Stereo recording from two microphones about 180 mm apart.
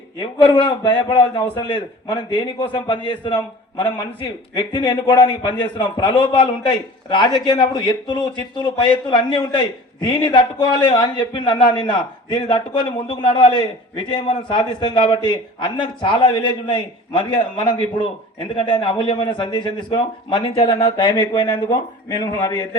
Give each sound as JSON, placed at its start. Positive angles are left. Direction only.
{"t": 0.2, "sound": "a man's voice", "side_deg": 25}